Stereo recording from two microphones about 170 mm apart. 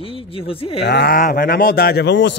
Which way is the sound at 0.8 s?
75° left (ahead or behind).